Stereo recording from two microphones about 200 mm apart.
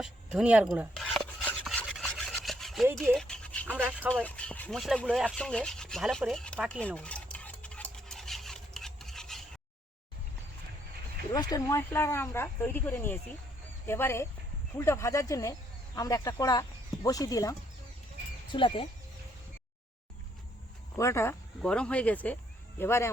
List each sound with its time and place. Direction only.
0.0 s rub: centre (ahead or behind)
3.0 s a sound: centre (ahead or behind)
3.7 s speech: 10° right (ahead or behind)
4.1 s rub: 5° left (ahead or behind)
11.3 s speech: 20° left (ahead or behind)
21.0 s speech: 15° left (ahead or behind)